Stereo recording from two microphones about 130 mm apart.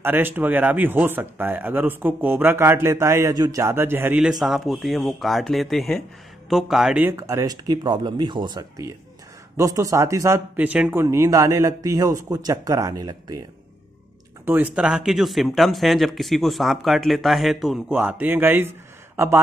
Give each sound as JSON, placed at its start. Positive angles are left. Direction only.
{"t": 0.0, "sound": "speech", "side_deg": -15}
{"t": 4.2, "sound": "speech", "side_deg": -5}
{"t": 7.1, "sound": "speech", "side_deg": -20}
{"t": 14.4, "sound": "speech", "side_deg": -15}
{"t": 17.8, "sound": "speech", "side_deg": -15}